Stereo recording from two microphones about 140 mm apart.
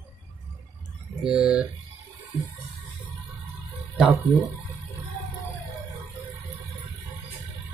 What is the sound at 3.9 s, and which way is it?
Speech, centre (ahead or behind).